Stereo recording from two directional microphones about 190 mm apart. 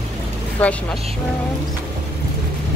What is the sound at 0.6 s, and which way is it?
Speech, 10° left (ahead or behind).